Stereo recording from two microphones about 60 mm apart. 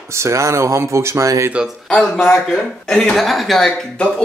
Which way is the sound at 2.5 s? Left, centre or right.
Centre.